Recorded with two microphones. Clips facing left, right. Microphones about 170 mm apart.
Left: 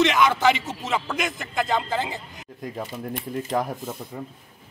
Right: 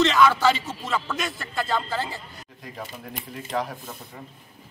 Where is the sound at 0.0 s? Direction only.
15° left (ahead or behind).